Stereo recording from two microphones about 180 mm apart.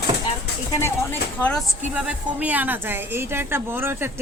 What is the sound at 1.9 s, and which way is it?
A woman's voice, 10° right (ahead or behind).